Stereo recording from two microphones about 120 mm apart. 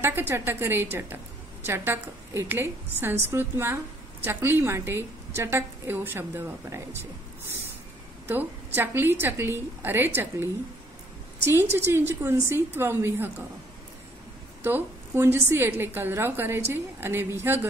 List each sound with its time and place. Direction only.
0.0 s a woman's voice: 20° right (ahead or behind)
8.3 s a woman's voice: 15° right (ahead or behind)
14.6 s a woman's voice: 15° right (ahead or behind)